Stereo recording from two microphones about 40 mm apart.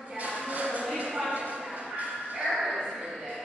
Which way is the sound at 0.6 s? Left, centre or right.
Right.